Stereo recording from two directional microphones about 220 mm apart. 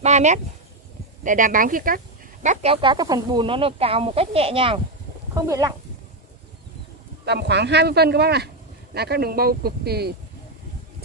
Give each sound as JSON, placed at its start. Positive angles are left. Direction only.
{"t": 0.0, "sound": "a sound", "side_deg": -30}
{"t": 1.2, "sound": "speech", "side_deg": -35}
{"t": 5.3, "sound": "speech", "side_deg": -15}
{"t": 7.2, "sound": "speech", "side_deg": -50}